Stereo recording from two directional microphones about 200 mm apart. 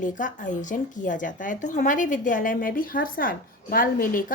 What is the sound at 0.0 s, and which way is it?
A woman's voice, 40° left (ahead or behind).